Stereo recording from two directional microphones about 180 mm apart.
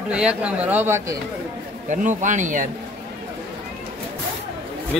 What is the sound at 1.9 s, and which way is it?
Speech, 45° right (ahead or behind).